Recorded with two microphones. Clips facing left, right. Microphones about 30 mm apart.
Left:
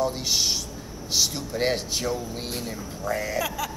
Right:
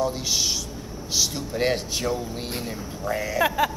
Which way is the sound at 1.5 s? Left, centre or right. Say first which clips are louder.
Right 1 dB; centre.